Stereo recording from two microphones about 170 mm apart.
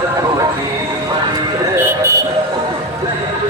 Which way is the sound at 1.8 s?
15° right (ahead or behind).